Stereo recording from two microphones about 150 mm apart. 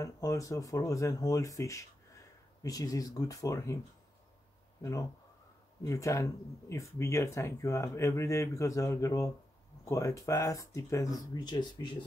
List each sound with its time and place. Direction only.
0.0 s speech: 20° left (ahead or behind)
5.8 s speech: 20° left (ahead or behind)